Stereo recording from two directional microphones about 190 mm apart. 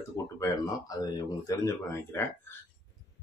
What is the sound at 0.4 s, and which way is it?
A man's voice, 20° left (ahead or behind).